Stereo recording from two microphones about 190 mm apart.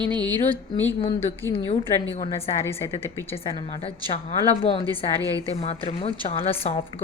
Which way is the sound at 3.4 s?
30° left (ahead or behind).